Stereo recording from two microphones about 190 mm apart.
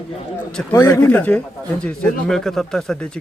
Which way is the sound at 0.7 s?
15° left (ahead or behind).